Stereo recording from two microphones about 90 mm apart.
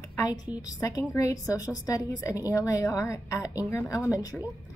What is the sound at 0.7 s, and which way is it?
A woman's voice, 35° left (ahead or behind).